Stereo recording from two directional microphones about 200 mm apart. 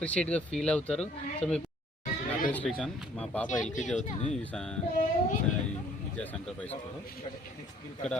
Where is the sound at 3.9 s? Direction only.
35° left (ahead or behind).